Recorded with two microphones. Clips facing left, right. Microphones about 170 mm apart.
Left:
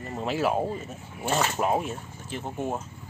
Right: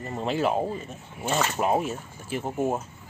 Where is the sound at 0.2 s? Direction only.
5° left (ahead or behind).